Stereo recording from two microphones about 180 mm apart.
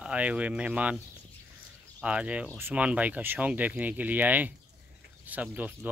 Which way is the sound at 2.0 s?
5° right (ahead or behind).